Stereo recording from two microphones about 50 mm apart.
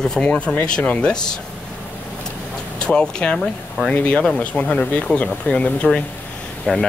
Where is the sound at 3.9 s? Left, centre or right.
Left; by 6.8 s centre.